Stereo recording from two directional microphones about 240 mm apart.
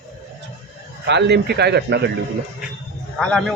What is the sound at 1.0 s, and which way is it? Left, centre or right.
Speech, right.